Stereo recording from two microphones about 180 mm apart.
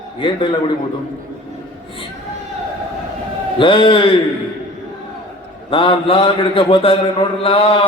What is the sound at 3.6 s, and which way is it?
Speech, 25° left (ahead or behind).